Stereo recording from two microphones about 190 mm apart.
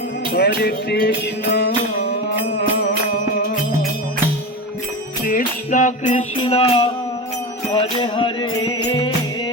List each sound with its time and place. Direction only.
0.3 s music: 55° left (ahead or behind)
5.2 s music: 45° left (ahead or behind)
6.3 s music: 30° left (ahead or behind)